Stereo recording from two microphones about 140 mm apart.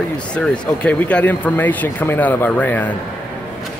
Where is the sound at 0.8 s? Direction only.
10° left (ahead or behind).